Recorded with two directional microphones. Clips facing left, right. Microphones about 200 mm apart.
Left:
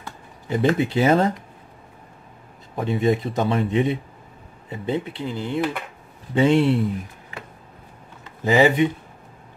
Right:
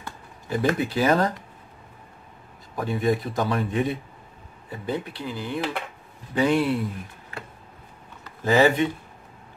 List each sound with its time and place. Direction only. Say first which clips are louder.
0.5 s speech: left 4 dB; 25° left (ahead or behind)
2.7 s speech: left 3 dB; 25° left (ahead or behind)
8.4 s speech: left 2 dB; 15° left (ahead or behind)